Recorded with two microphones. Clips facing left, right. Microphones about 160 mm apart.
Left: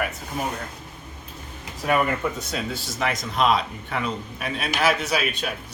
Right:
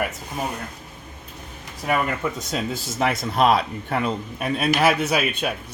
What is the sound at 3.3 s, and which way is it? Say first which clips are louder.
A man's voice: right 2 dB; 55° right (ahead or behind).